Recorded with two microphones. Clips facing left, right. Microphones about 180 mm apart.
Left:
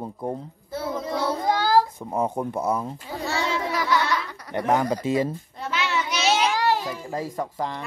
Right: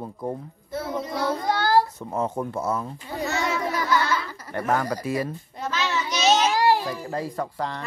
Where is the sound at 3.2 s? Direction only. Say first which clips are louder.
Even; 30° left (ahead or behind).